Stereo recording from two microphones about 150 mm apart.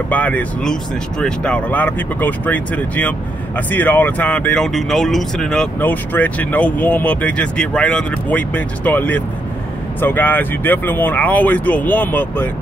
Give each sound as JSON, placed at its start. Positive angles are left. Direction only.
{"t": 0.1, "sound": "speech", "side_deg": 10}